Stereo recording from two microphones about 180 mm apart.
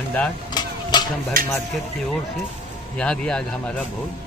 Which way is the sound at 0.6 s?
25° left (ahead or behind).